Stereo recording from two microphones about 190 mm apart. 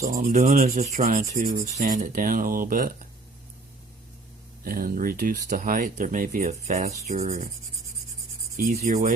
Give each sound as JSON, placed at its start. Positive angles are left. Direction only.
{"t": 0.0, "sound": "rub", "side_deg": -40}
{"t": 1.8, "sound": "speech", "side_deg": -45}
{"t": 4.6, "sound": "speech", "side_deg": -50}
{"t": 7.2, "sound": "rub", "side_deg": -35}
{"t": 8.5, "sound": "speech", "side_deg": -40}